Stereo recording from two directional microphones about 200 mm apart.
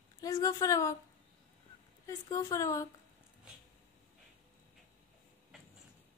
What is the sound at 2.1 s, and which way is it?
Speech, 15° left (ahead or behind).